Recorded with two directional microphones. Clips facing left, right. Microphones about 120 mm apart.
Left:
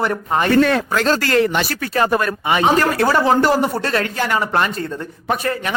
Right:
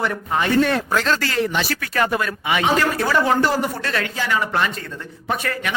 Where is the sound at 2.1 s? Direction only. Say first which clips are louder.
Left 4 dB; 45° left (ahead or behind).